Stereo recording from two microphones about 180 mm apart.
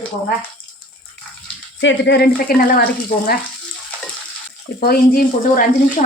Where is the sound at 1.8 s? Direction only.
80° left; by 3.4 s 55° left (ahead or behind).